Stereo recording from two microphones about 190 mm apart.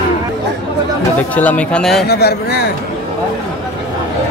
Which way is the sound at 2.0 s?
60° left (ahead or behind).